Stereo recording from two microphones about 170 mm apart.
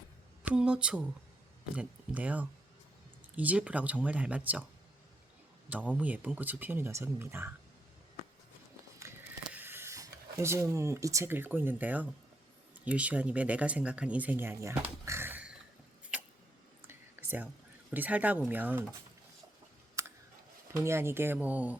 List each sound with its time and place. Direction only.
0.4 s speech: 5° right (ahead or behind)
9.0 s a sound: 15° right (ahead or behind)
12.8 s speech: 10° right (ahead or behind)
16.8 s whispering: 15° right (ahead or behind)
17.9 s speech: 10° right (ahead or behind)
20.0 s scissors: 15° right (ahead or behind)
20.7 s speech: 15° right (ahead or behind)